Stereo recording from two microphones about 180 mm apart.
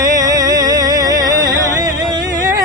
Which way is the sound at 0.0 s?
20° right (ahead or behind).